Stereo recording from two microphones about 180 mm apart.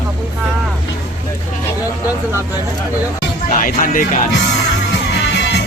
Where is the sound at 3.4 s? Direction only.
50° left (ahead or behind).